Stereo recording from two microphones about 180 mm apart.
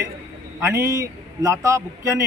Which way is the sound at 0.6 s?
15° right (ahead or behind).